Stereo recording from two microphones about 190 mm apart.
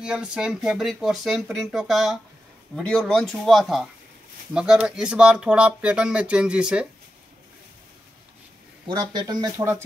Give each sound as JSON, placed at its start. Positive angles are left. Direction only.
{"t": 0.0, "sound": "speech", "side_deg": -5}
{"t": 8.8, "sound": "speech", "side_deg": -20}